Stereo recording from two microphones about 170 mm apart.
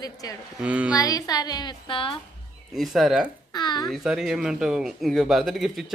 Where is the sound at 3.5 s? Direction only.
25° left (ahead or behind).